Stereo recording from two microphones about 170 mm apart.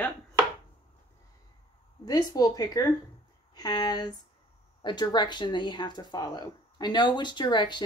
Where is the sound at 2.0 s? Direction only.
20° left (ahead or behind).